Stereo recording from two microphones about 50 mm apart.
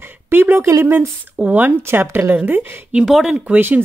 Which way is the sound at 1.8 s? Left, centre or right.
Right.